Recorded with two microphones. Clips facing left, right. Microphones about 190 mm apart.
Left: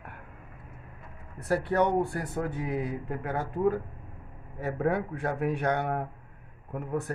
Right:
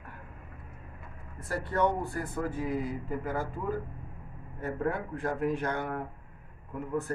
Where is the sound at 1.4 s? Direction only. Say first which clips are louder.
Left 3 dB; 70° left (ahead or behind).